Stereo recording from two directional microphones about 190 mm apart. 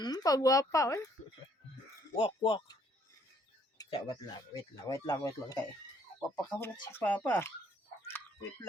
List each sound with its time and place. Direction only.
0.0 s speech: 20° left (ahead or behind)
2.1 s speech: 25° left (ahead or behind)
3.8 s speech: 25° left (ahead or behind); by 7.5 s 10° left (ahead or behind)
8.0 s a sound: 10° left (ahead or behind)